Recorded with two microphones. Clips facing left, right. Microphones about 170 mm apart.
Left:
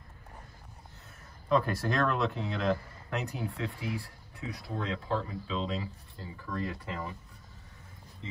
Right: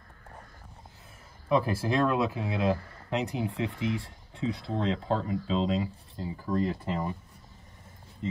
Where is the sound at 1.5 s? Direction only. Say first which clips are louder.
Right 2 dB; 10° right (ahead or behind); by 7.2 s 30° right (ahead or behind).